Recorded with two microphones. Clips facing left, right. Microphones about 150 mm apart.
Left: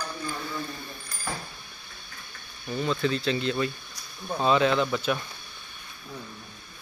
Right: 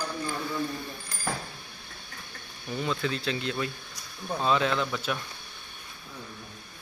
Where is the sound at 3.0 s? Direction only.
5° right (ahead or behind).